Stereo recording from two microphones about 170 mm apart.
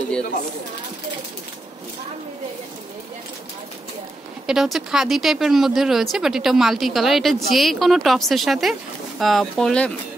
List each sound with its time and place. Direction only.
4.5 s speech: centre (ahead or behind)